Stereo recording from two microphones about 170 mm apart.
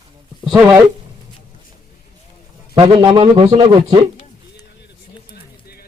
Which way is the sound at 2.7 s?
30° right (ahead or behind).